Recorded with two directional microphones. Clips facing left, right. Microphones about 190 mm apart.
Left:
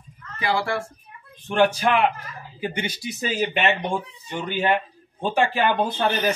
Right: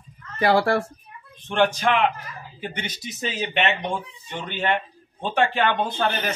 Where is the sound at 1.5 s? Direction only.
10° left (ahead or behind).